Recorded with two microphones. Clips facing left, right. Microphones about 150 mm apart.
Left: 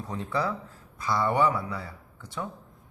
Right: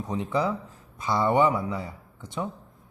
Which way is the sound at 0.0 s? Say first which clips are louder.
Right 3 dB; 20° right (ahead or behind).